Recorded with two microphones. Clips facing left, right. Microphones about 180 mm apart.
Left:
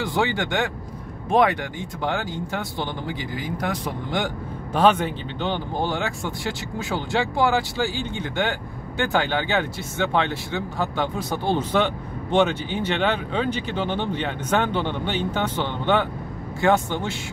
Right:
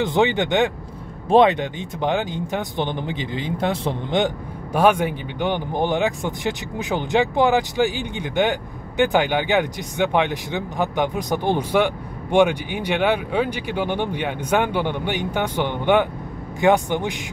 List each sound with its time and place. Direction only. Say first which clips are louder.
0.0 s speech: right 5 dB; 20° right (ahead or behind)
4.7 s speech: right 1 dB; 10° right (ahead or behind)